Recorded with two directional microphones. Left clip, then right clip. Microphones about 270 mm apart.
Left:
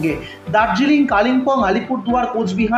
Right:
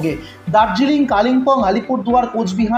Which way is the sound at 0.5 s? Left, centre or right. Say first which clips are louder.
Right 1 dB; right.